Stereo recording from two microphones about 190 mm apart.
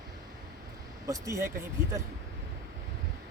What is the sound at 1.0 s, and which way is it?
Speech, 20° right (ahead or behind).